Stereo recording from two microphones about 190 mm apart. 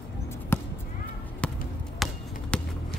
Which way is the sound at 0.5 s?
10° left (ahead or behind).